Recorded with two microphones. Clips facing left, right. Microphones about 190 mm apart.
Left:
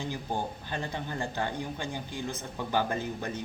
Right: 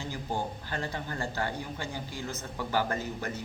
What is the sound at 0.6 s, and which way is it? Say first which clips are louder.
Speech: even; 20° left (ahead or behind).